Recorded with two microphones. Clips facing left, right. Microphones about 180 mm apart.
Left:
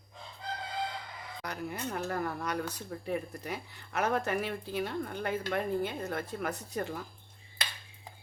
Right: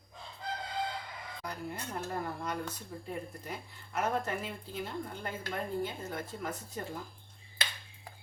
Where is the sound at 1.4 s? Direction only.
75° left (ahead or behind).